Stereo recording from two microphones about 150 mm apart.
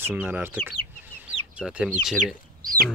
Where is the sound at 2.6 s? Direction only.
75° right (ahead or behind).